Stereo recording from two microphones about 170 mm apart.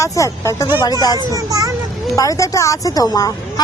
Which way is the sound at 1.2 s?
20° right (ahead or behind).